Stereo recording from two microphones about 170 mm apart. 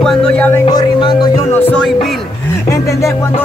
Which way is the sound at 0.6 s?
25° left (ahead or behind).